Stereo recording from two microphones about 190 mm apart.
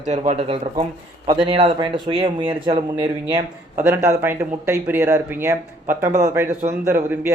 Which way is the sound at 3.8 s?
10° right (ahead or behind).